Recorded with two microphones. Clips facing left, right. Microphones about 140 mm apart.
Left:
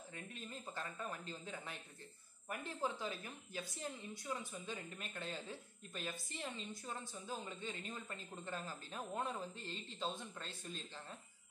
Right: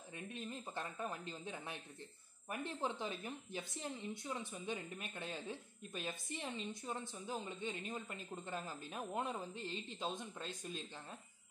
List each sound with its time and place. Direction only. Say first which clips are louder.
0.1 s a woman's voice: right 5 dB; 20° right (ahead or behind)